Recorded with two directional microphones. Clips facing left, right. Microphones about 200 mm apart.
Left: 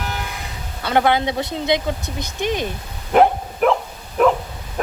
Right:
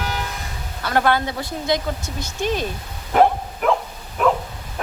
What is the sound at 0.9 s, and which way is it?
Speech, 20° left (ahead or behind).